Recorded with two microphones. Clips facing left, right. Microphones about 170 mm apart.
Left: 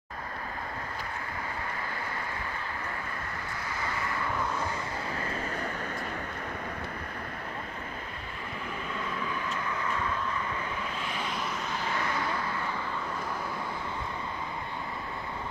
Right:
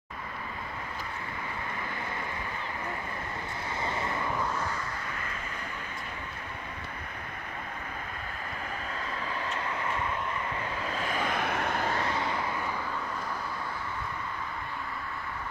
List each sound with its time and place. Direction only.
3.8 s vehicle: 25° right (ahead or behind)
11.0 s vehicle: 45° right (ahead or behind)